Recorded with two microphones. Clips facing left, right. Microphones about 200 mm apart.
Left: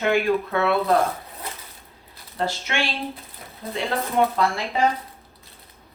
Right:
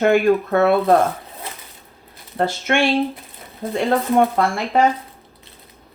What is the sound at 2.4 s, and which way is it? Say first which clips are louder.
Speech: right 7 dB; 55° right (ahead or behind).